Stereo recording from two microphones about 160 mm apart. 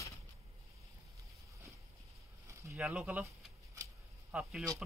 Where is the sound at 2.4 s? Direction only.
20° right (ahead or behind).